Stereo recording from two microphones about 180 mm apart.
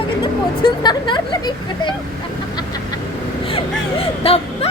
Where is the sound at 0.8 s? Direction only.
25° left (ahead or behind).